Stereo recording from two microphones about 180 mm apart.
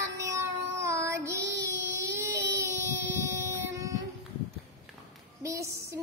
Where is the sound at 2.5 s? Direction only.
15° right (ahead or behind).